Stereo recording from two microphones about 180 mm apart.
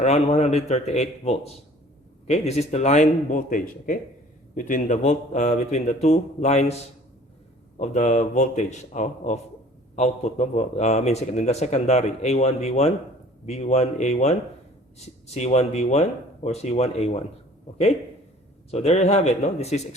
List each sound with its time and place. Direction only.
0.0 s a man's voice: 40° left (ahead or behind)
7.8 s a man's voice: 40° left (ahead or behind)
18.7 s a man's voice: 35° left (ahead or behind)